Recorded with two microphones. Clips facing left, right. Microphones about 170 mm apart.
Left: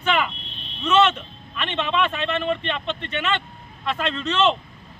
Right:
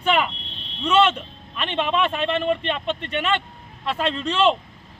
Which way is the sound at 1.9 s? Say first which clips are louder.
Right 1 dB; 35° right (ahead or behind).